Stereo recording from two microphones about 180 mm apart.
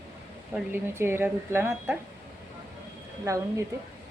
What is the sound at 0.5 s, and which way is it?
Speech, 10° right (ahead or behind).